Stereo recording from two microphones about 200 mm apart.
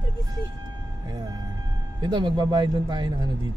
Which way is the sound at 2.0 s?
20° right (ahead or behind).